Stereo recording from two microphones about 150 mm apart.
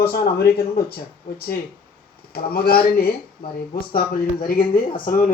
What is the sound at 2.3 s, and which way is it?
Speech, 90° left.